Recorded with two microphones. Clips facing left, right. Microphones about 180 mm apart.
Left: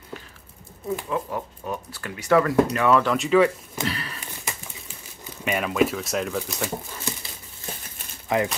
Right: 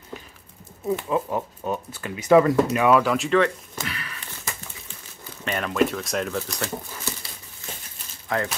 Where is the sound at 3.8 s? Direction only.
35° left (ahead or behind).